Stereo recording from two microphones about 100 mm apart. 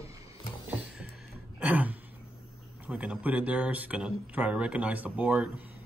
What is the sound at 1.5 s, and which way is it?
Throat clearing, 15° right (ahead or behind).